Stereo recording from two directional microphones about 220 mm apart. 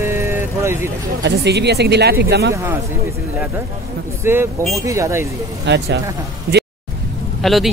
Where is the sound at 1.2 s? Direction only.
50° right (ahead or behind).